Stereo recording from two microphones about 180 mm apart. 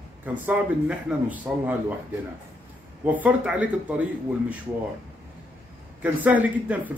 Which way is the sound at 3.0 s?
10° right (ahead or behind).